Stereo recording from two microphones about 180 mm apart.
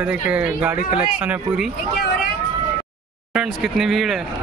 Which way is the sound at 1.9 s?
65° left (ahead or behind).